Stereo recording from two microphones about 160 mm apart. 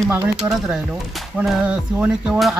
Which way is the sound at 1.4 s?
5° right (ahead or behind).